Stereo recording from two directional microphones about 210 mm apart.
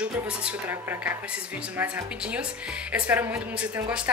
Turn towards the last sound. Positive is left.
turn(degrees=-5)  # may be behind; listen again after turning